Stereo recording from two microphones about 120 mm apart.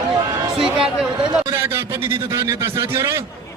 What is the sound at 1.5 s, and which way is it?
A man's voice, 20° right (ahead or behind).